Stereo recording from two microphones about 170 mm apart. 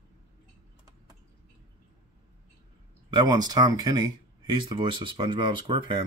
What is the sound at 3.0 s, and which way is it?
Speech, 25° right (ahead or behind).